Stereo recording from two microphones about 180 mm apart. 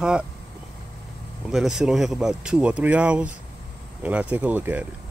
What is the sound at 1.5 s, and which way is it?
Speech, centre (ahead or behind).